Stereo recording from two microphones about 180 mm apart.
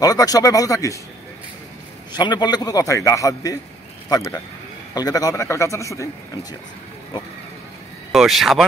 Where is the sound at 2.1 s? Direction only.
25° left (ahead or behind).